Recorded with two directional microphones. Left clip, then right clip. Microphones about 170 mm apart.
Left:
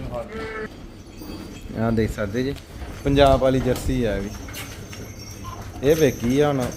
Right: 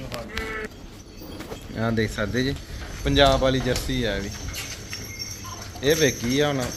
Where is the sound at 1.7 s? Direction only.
5° left (ahead or behind).